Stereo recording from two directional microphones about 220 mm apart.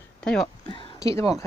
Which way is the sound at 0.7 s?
20° left (ahead or behind).